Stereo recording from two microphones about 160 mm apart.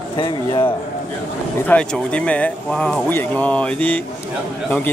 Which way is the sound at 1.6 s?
5° left (ahead or behind).